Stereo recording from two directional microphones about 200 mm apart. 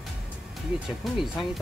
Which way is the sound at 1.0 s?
Centre (ahead or behind).